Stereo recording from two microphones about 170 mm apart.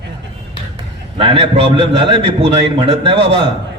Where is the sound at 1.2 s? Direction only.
30° right (ahead or behind).